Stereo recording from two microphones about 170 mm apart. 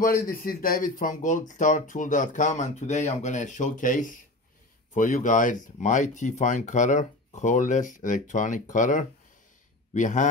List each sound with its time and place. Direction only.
0.0 s speech: 60° left (ahead or behind)